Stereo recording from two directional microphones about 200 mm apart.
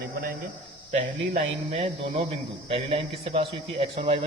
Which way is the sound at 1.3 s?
35° right (ahead or behind).